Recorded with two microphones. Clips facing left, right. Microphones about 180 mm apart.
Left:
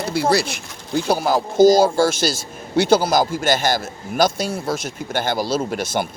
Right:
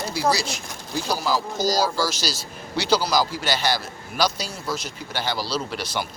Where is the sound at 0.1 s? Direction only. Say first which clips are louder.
Left 5 dB; 60° left (ahead or behind).